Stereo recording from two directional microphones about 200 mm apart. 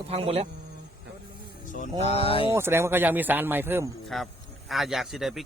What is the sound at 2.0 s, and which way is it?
Speech, 30° left (ahead or behind).